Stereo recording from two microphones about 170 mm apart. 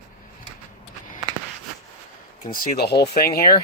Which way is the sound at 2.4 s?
55° left (ahead or behind).